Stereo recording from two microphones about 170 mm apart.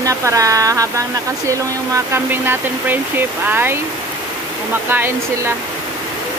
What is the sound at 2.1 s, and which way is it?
Speech, 15° right (ahead or behind).